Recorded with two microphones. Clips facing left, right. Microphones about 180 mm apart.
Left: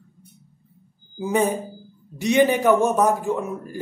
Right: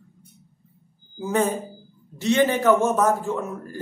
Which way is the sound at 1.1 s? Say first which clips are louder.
Left 2 dB; 15° left (ahead or behind).